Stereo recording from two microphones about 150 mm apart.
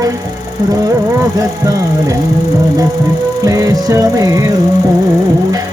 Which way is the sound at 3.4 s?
25° right (ahead or behind).